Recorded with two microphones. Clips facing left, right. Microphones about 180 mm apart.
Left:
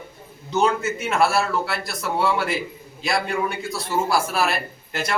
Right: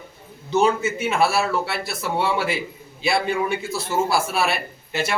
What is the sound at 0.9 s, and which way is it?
Speech, 5° right (ahead or behind).